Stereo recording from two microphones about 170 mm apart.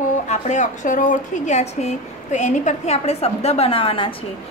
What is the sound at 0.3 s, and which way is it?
A woman's voice, 45° left (ahead or behind).